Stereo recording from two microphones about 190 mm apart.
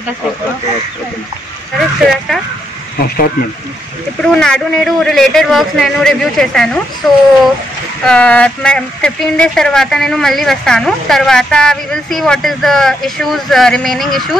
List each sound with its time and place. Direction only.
1.8 s speech: centre (ahead or behind)
4.2 s speech: 5° left (ahead or behind)